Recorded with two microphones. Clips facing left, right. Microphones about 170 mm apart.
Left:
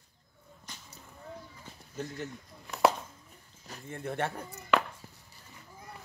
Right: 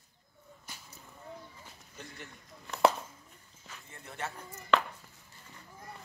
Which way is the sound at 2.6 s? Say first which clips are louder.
Even; 5° left (ahead or behind).